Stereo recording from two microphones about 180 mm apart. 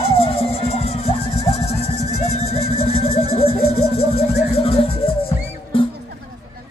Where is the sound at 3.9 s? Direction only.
35° left (ahead or behind).